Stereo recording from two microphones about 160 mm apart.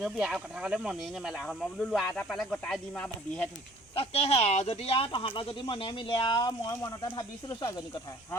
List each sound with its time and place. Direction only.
0.0 s speech: centre (ahead or behind)
3.9 s speech: 35° left (ahead or behind)